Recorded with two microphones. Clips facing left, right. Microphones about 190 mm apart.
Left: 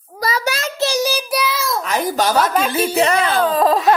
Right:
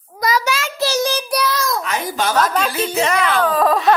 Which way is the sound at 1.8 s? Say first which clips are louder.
Left 3 dB; 40° left (ahead or behind).